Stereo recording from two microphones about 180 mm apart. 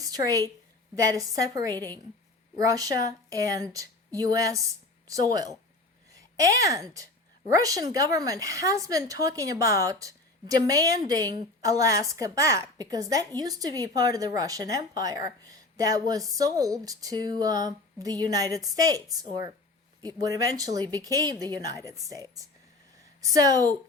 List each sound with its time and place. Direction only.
0.0 s a woman's voice: 20° right (ahead or behind)
23.2 s a woman's voice: 20° right (ahead or behind)